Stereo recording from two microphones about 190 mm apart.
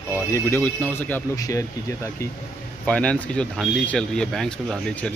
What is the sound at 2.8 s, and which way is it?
Speech, 5° left (ahead or behind).